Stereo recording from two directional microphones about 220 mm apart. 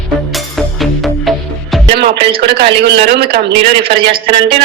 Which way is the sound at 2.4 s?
45° right (ahead or behind).